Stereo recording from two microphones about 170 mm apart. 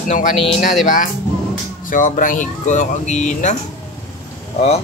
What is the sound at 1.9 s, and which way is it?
Speech, 50° left (ahead or behind).